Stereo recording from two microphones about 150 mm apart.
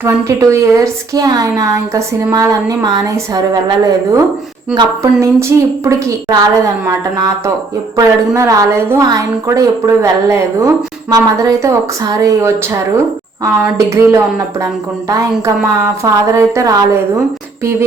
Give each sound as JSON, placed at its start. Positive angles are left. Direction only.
{"t": 0.0, "sound": "a woman's voice", "side_deg": -20}
{"t": 4.7, "sound": "a woman's voice", "side_deg": -25}